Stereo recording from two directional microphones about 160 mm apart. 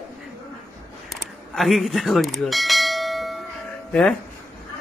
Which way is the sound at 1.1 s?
Centre (ahead or behind).